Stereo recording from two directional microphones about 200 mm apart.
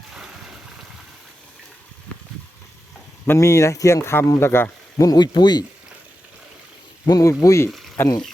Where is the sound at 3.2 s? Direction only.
15° left (ahead or behind).